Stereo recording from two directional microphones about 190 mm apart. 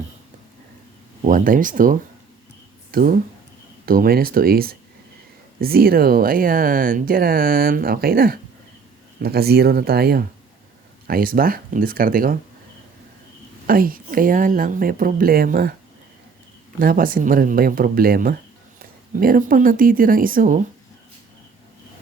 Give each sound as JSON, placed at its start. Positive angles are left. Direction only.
{"t": 1.3, "sound": "speech", "side_deg": -45}
{"t": 13.7, "sound": "speech", "side_deg": -50}
{"t": 16.8, "sound": "speech", "side_deg": -50}